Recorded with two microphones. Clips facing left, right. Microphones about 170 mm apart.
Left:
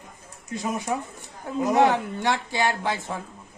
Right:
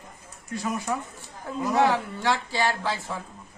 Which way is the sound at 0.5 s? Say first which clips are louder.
Left 1 dB; 20° left (ahead or behind).